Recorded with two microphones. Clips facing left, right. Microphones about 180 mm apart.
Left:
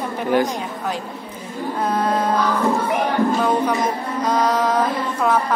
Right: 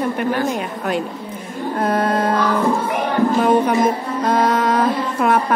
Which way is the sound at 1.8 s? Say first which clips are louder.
Right 2 dB; 55° right (ahead or behind).